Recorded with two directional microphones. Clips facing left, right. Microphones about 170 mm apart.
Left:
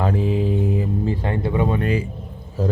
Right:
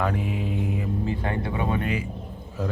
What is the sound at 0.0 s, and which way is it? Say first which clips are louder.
Mantra: left 6 dB; 30° left (ahead or behind).